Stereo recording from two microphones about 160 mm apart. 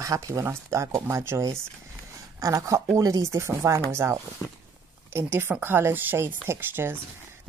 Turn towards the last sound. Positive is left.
turn(degrees=-15)  # may be behind; listen again after turning